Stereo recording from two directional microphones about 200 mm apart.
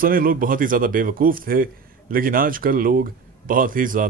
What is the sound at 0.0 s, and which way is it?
A man's voice, 45° right (ahead or behind).